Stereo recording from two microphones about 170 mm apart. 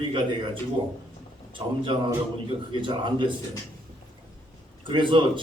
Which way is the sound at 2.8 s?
30° right (ahead or behind).